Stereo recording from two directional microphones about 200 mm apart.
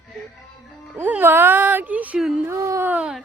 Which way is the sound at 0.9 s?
10° right (ahead or behind).